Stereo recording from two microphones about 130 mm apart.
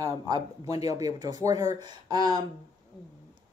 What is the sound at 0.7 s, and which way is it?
Speech, 25° right (ahead or behind).